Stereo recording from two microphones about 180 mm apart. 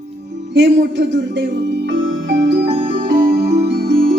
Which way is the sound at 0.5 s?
75° right (ahead or behind).